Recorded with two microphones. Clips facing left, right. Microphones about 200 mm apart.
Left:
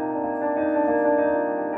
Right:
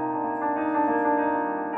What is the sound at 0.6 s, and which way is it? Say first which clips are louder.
Music: left 4 dB; 40° left (ahead or behind).